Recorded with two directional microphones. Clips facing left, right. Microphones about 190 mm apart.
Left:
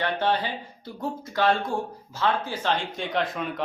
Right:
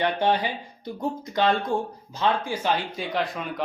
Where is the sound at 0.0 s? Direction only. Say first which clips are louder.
Right 2 dB; 15° right (ahead or behind).